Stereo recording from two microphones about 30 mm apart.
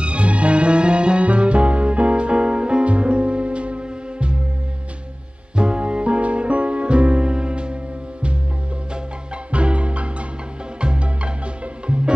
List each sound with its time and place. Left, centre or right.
0.0 s music: right
5.6 s music: right
9.5 s music: right